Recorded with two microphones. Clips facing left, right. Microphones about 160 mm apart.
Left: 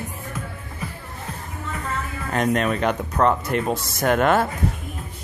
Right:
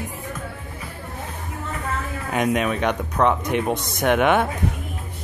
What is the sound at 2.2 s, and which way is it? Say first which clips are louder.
Speech: even; 5° right (ahead or behind).